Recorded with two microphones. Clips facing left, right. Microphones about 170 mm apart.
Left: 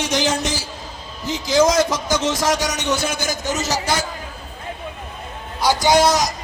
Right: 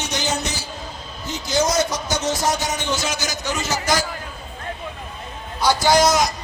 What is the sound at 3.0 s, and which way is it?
Speech, 55° left (ahead or behind).